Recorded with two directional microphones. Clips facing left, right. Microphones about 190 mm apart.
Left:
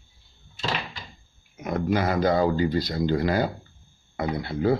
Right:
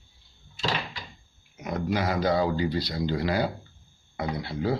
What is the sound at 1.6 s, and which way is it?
Speech, 50° left (ahead or behind).